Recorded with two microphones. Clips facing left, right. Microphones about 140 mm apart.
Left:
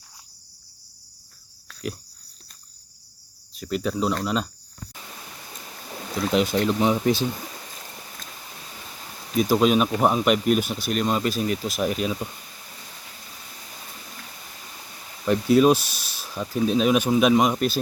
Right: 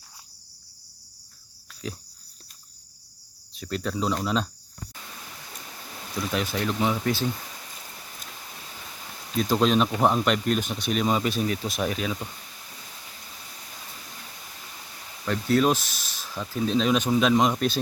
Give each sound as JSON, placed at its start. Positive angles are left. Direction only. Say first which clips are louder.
{"t": 3.6, "sound": "speech", "louder": "left 3 dB", "side_deg": 5}
{"t": 6.3, "sound": "speech", "louder": "left 7 dB", "side_deg": 15}
{"t": 9.3, "sound": "speech", "louder": "left 3 dB", "side_deg": 10}
{"t": 11.8, "sound": "speech", "louder": "left 4 dB", "side_deg": 15}
{"t": 15.2, "sound": "speech", "louder": "left 5 dB", "side_deg": 15}